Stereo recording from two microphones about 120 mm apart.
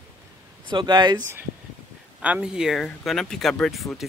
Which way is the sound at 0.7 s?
40° right (ahead or behind).